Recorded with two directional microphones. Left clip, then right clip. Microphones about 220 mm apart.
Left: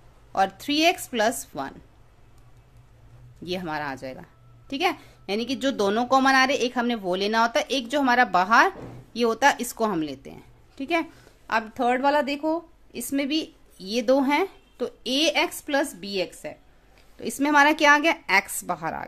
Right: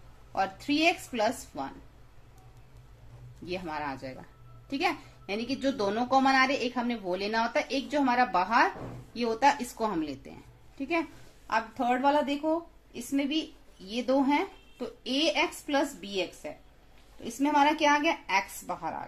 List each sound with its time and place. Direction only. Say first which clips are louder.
0.3 s a woman's voice: left 6 dB; 45° left (ahead or behind)
3.4 s a woman's voice: left 5 dB; 45° left (ahead or behind)